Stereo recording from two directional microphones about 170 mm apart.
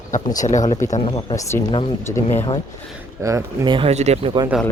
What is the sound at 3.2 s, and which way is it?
Speech, 20° right (ahead or behind).